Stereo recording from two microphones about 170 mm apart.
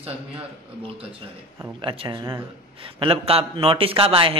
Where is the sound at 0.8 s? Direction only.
35° right (ahead or behind).